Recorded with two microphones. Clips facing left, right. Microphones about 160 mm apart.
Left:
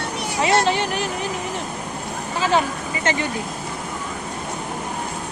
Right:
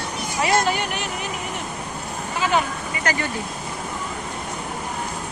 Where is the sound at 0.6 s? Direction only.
30° left (ahead or behind).